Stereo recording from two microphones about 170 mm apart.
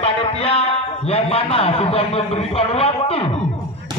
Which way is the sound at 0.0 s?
35° left (ahead or behind).